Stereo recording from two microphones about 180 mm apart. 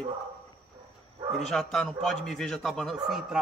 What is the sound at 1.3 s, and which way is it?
A man's voice, centre (ahead or behind).